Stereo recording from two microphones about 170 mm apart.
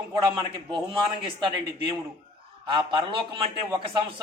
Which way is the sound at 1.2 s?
30° right (ahead or behind).